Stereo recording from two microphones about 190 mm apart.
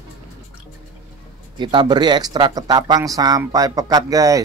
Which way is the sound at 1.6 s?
25° right (ahead or behind).